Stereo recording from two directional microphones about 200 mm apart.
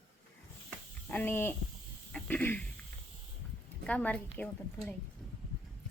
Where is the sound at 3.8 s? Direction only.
5° left (ahead or behind).